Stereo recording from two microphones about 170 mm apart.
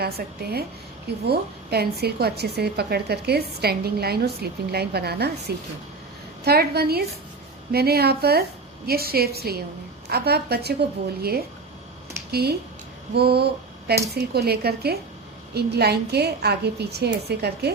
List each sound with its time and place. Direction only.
0.0 s a woman's voice: 65° right (ahead or behind)
13.1 s a sound: 70° right (ahead or behind)
14.1 s a woman's voice: 70° right (ahead or behind)